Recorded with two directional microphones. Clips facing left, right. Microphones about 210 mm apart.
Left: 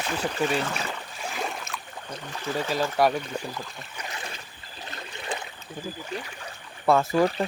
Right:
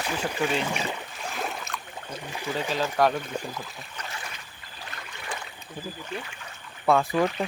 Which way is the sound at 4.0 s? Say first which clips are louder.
Left 1 dB; 15° left (ahead or behind).